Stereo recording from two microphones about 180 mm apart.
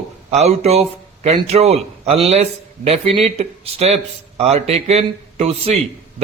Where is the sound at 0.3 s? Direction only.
35° right (ahead or behind).